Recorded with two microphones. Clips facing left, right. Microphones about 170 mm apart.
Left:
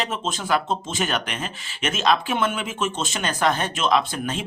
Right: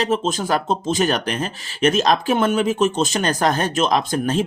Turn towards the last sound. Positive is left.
turn(degrees=-40)  # may be behind; listen again after turning